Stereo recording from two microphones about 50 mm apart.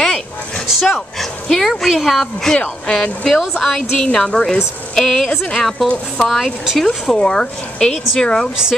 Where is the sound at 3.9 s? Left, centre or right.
Centre.